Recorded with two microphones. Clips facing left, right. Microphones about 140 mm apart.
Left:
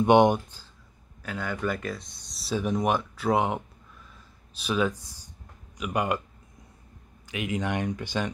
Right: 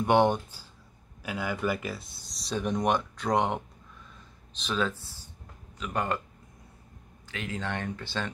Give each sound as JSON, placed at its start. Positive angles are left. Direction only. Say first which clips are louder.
{"t": 0.0, "sound": "speech", "louder": "left 4 dB", "side_deg": 15}
{"t": 1.2, "sound": "speech", "louder": "even", "side_deg": -5}
{"t": 7.2, "sound": "speech", "louder": "left 5 dB", "side_deg": 15}